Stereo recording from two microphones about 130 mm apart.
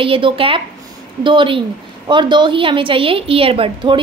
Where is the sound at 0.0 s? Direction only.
45° right (ahead or behind).